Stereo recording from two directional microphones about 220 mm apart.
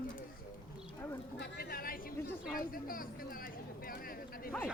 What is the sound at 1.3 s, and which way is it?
Speech, 45° left (ahead or behind).